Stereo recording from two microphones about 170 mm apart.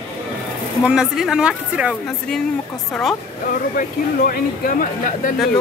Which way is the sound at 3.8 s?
55° left (ahead or behind).